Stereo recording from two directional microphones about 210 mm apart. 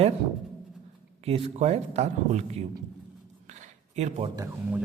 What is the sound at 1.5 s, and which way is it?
A man's voice, 30° right (ahead or behind).